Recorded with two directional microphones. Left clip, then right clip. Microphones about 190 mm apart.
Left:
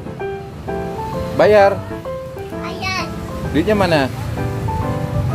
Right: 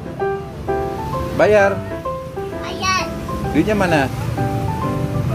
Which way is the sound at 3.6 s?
25° left (ahead or behind).